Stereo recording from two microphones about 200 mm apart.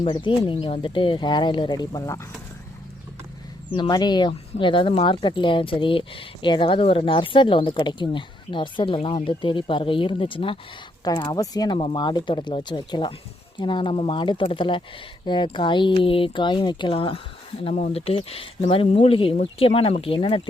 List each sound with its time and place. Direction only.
0.1 s speech: 25° left (ahead or behind)
3.7 s speech: 20° left (ahead or behind)